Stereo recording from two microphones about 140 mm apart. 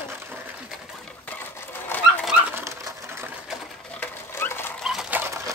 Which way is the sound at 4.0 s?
15° left (ahead or behind).